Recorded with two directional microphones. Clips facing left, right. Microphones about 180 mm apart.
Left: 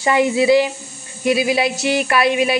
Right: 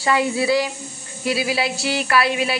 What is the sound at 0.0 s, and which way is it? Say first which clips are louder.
A woman's voice: left 4 dB; 15° left (ahead or behind).